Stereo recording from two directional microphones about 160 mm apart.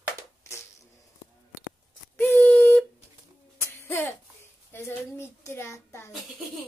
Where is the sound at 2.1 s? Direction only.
15° left (ahead or behind).